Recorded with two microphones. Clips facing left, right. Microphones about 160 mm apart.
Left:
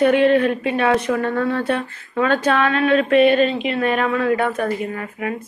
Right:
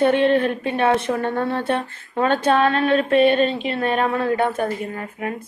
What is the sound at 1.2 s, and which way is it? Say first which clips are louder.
A woman's voice: left 2 dB; 25° right (ahead or behind).